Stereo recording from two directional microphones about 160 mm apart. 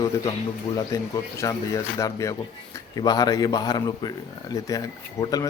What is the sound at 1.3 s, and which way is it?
A man's voice, 20° left (ahead or behind).